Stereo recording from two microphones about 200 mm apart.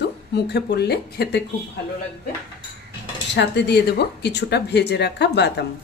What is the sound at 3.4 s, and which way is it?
A woman's voice, 60° left (ahead or behind).